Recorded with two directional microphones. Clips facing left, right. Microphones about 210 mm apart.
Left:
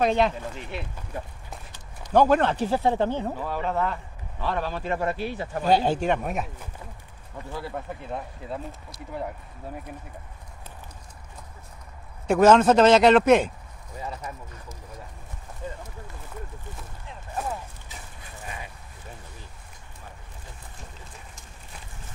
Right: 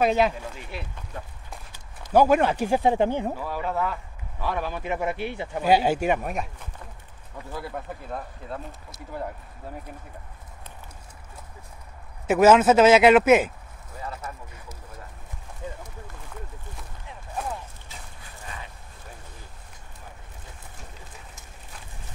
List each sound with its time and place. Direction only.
0.0 s speech: 5° right (ahead or behind)
2.1 s speech: 10° right (ahead or behind)
12.3 s speech: 5° right (ahead or behind)